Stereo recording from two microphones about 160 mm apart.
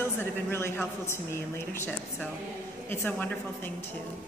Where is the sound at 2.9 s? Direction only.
10° left (ahead or behind).